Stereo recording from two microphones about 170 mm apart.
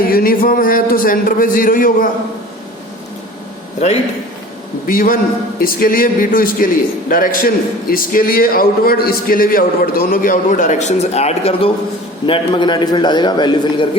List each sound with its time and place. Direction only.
0.1 s a man's voice: 60° left (ahead or behind)
4.9 s a man's voice: 55° left (ahead or behind); by 13.8 s 25° left (ahead or behind)